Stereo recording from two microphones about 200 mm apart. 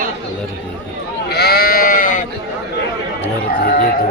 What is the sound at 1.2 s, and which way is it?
Sheep, 55° left (ahead or behind).